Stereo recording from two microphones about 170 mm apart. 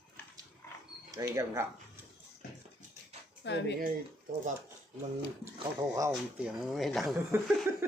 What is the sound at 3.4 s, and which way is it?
Speech, 90° left.